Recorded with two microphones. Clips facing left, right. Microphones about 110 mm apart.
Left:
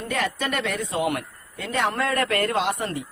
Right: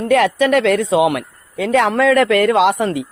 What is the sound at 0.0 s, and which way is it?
Speech, 75° right (ahead or behind).